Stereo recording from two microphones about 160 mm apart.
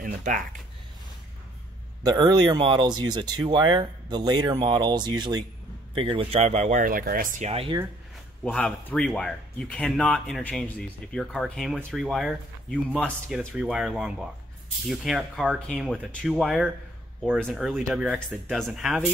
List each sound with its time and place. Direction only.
0.0 s speech: 60° right (ahead or behind)
2.0 s speech: 25° right (ahead or behind); by 7.4 s 60° right (ahead or behind)
7.4 s speech: 40° right (ahead or behind)
8.5 s speech: 5° left (ahead or behind)